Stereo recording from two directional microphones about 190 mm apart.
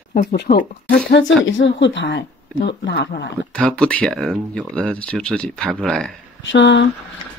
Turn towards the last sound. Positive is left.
turn(degrees=70)  # may be behind; listen again after turning